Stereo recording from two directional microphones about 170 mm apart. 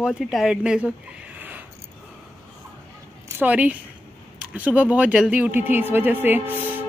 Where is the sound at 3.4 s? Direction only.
10° right (ahead or behind).